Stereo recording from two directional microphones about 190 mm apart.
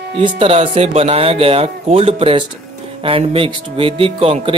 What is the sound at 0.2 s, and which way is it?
Speech, 30° right (ahead or behind).